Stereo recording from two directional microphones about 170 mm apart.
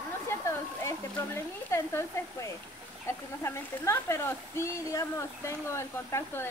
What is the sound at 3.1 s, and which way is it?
Speech, 15° left (ahead or behind).